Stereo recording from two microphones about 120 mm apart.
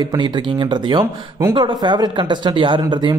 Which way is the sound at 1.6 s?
35° right (ahead or behind).